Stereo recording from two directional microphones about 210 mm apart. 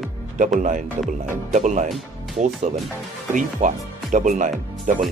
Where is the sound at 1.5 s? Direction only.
35° right (ahead or behind).